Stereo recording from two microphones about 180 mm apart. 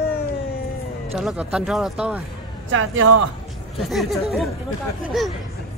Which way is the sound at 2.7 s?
90° right.